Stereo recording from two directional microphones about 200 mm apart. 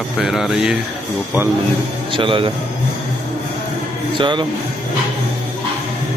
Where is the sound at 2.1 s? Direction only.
25° right (ahead or behind).